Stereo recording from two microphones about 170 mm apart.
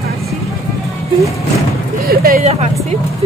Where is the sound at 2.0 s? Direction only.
60° right (ahead or behind).